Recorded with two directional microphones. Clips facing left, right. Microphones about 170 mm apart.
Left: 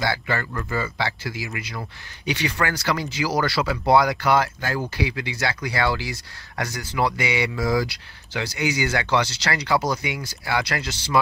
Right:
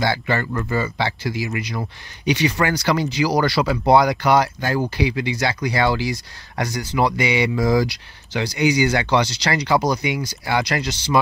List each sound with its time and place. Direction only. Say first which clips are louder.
0.0 s speech: right 4 dB; 25° right (ahead or behind)